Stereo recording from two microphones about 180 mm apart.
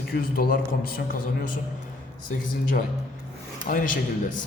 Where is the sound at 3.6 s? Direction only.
50° left (ahead or behind).